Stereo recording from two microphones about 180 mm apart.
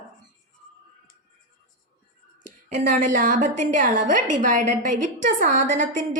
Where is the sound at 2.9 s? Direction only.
45° right (ahead or behind).